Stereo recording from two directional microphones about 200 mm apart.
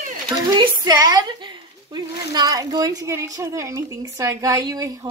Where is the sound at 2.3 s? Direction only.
20° right (ahead or behind).